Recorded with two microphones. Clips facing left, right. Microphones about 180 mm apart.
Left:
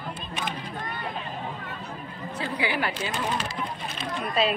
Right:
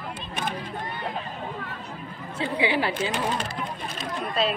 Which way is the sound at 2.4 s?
25° right (ahead or behind).